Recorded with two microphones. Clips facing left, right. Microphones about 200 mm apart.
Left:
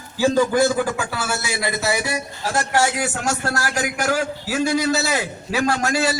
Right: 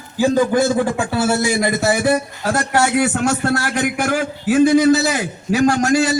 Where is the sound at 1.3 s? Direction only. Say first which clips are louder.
Right 8 dB; 45° right (ahead or behind).